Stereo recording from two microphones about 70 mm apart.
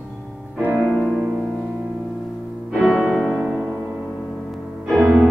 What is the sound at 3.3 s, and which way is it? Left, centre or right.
Music, centre.